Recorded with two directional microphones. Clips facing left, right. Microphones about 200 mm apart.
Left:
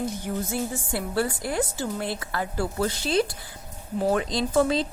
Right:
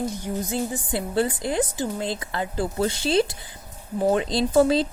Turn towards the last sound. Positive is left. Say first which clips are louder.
# right 4 dB
turn(degrees=-35)  # may be behind; listen again after turning